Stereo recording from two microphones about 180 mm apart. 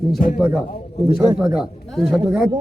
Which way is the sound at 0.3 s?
10° right (ahead or behind).